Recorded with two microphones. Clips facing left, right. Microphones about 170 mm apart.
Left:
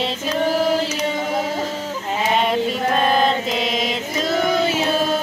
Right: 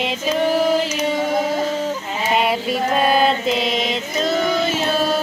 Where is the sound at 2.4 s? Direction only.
10° right (ahead or behind).